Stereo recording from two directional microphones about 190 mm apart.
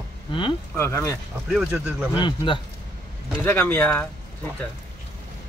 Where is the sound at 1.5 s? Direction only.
5° right (ahead or behind).